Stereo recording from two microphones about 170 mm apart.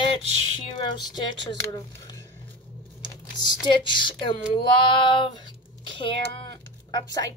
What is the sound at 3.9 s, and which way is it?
Speech, 30° left (ahead or behind).